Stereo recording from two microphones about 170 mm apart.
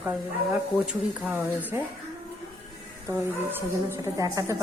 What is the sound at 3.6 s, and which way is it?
A woman's voice, 15° right (ahead or behind).